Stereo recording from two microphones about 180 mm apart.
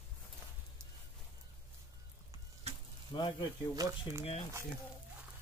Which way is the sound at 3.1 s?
25° left (ahead or behind).